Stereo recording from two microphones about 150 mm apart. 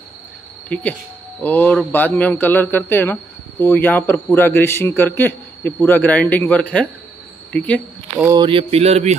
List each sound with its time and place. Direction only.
0.7 s a man's voice: 10° left (ahead or behind)
8.3 s speech: 30° right (ahead or behind)